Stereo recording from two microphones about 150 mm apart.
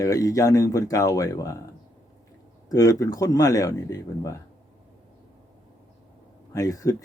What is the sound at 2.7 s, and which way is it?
Speech, 25° left (ahead or behind).